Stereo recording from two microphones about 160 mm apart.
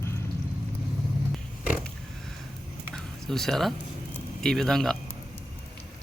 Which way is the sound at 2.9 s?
5° left (ahead or behind).